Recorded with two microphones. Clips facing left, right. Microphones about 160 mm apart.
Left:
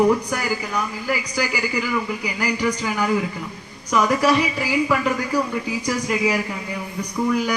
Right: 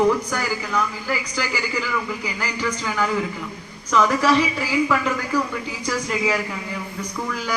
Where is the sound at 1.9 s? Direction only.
15° left (ahead or behind).